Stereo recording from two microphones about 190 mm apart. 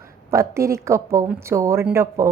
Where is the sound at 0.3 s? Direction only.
15° right (ahead or behind).